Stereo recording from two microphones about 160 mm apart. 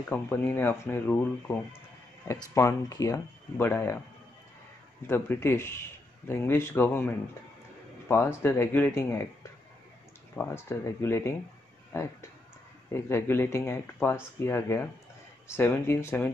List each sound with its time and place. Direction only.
0.1 s speech: 15° left (ahead or behind)
5.0 s speech: 15° left (ahead or behind)
10.3 s speech: 15° left (ahead or behind)